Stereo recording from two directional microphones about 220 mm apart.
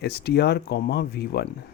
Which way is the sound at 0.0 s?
50° left (ahead or behind).